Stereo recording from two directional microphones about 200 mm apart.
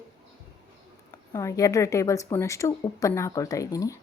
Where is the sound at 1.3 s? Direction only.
15° left (ahead or behind).